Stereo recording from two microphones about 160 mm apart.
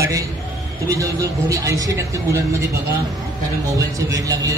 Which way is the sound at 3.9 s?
20° right (ahead or behind).